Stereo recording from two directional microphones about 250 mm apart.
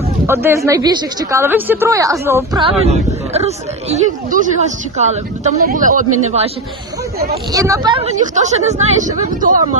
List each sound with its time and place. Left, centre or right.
0.3 s speech: centre; by 6.1 s right
7.5 s speech: centre; by 9.6 s right